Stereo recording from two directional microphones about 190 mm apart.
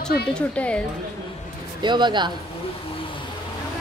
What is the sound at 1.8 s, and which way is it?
Speech, 25° right (ahead or behind).